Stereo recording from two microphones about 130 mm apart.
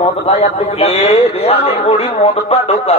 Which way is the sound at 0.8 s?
50° left (ahead or behind).